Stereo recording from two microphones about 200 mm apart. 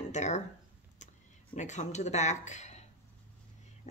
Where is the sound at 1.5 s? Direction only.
35° left (ahead or behind).